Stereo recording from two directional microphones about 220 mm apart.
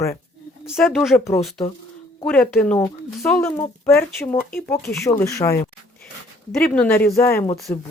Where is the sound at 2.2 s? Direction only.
10° left (ahead or behind).